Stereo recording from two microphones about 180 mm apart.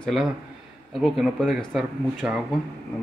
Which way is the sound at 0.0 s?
Centre (ahead or behind).